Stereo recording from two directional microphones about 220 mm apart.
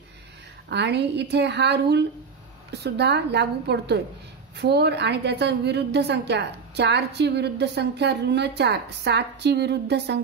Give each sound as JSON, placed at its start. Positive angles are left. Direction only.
{"t": 0.7, "sound": "a woman's voice", "side_deg": -50}